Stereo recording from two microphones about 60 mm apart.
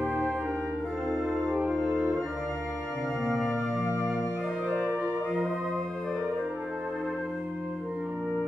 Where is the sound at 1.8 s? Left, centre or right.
Right.